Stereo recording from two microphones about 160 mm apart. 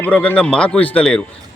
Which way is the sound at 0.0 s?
10° left (ahead or behind).